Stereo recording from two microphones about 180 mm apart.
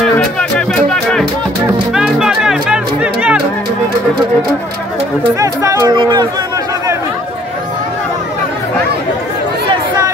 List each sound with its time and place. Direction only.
0.0 s music: 5° left (ahead or behind)
5.4 s music: 20° right (ahead or behind)